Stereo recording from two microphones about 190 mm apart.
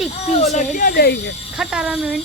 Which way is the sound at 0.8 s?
50° left (ahead or behind).